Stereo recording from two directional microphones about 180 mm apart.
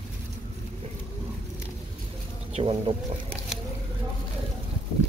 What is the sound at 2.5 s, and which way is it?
Speech, 30° right (ahead or behind).